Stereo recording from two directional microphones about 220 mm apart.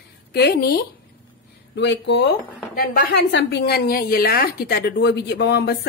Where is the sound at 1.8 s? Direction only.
55° left (ahead or behind).